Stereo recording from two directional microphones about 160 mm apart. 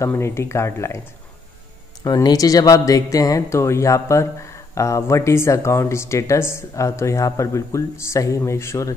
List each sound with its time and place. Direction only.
0.0 s speech: 15° left (ahead or behind)
2.0 s speech: 25° left (ahead or behind)